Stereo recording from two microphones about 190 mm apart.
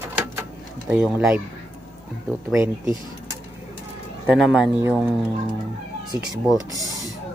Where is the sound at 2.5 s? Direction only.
15° right (ahead or behind).